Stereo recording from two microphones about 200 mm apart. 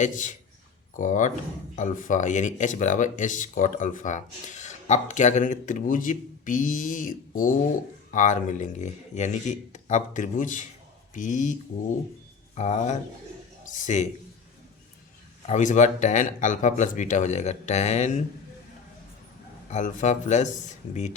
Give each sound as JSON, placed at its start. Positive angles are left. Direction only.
{"t": 0.0, "sound": "speech", "side_deg": 40}
{"t": 12.5, "sound": "a man's voice", "side_deg": 35}
{"t": 15.4, "sound": "speech", "side_deg": 35}
{"t": 19.7, "sound": "speech", "side_deg": 40}